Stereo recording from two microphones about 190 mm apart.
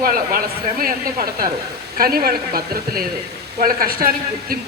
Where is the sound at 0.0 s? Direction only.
50° right (ahead or behind).